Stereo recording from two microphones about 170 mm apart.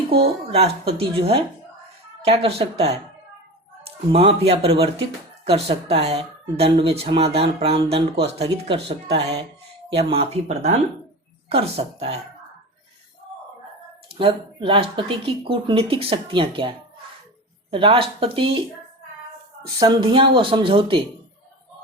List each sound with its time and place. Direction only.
0.5 s speech: 35° right (ahead or behind)
4.1 s speech: 35° right (ahead or behind)
14.1 s speech: 30° right (ahead or behind)
19.6 s speech: 25° right (ahead or behind)